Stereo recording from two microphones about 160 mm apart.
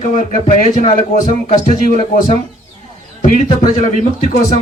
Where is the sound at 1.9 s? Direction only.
40° left (ahead or behind).